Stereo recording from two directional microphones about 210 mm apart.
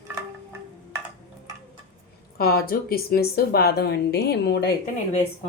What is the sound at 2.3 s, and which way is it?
A woman's voice, 45° left (ahead or behind).